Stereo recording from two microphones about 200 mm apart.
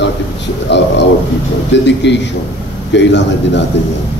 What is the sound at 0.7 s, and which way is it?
A man's voice, 60° left (ahead or behind).